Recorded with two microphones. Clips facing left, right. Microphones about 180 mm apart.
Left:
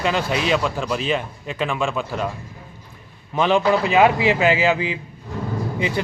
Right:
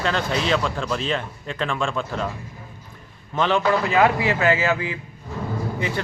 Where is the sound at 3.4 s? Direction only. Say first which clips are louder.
Left 3 dB; 15° left (ahead or behind).